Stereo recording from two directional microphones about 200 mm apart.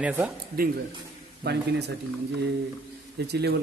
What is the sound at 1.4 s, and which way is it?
Speech, 55° right (ahead or behind).